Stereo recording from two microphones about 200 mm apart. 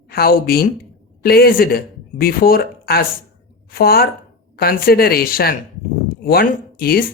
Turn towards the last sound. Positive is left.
turn(degrees=50)  # may be behind; listen again after turning